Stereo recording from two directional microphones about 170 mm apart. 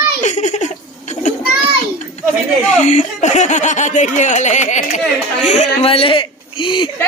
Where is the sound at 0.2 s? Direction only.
45° left (ahead or behind).